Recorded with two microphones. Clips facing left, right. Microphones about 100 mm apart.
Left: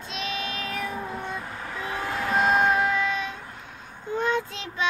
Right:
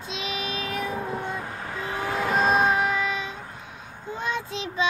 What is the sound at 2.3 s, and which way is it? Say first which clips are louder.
Child singing: left 1 dB; 25° right (ahead or behind).